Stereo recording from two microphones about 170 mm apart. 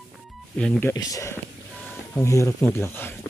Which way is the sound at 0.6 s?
10° left (ahead or behind).